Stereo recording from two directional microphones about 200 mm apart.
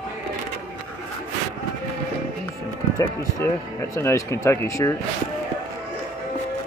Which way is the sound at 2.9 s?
15° left (ahead or behind).